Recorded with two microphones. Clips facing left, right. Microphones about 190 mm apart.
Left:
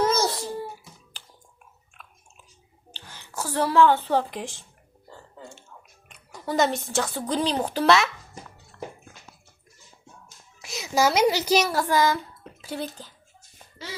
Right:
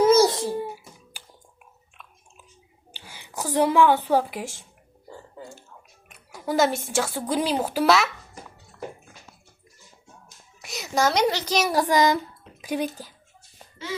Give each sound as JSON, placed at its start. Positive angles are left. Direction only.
{"t": 0.0, "sound": "a sound", "side_deg": -10}
{"t": 0.3, "sound": "a sound", "side_deg": -20}
{"t": 2.9, "sound": "a woman's voice", "side_deg": -10}
{"t": 5.4, "sound": "burping", "side_deg": 0}
{"t": 6.1, "sound": "speech", "side_deg": -5}
{"t": 10.6, "sound": "a child's voice", "side_deg": 0}
{"t": 11.6, "sound": "speech", "side_deg": -15}